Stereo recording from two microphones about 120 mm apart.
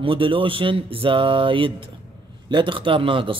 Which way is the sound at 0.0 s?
45° right (ahead or behind).